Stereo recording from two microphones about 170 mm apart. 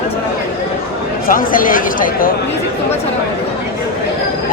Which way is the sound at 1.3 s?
55° left (ahead or behind).